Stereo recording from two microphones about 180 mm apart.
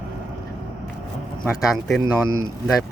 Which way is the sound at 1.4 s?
Centre (ahead or behind).